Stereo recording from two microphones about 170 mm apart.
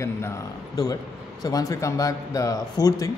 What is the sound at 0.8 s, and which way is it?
Speech, 20° left (ahead or behind).